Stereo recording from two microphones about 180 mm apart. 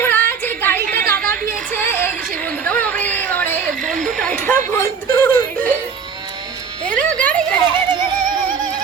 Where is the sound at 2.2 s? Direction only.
50° right (ahead or behind).